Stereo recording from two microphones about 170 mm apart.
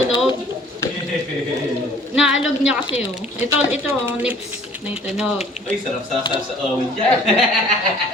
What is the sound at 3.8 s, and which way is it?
Speech, 15° right (ahead or behind).